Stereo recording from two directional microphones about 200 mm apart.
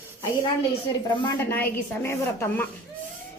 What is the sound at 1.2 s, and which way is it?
A woman's voice, 10° left (ahead or behind).